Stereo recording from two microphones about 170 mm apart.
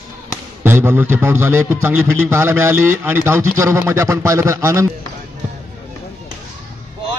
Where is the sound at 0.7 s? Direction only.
15° right (ahead or behind).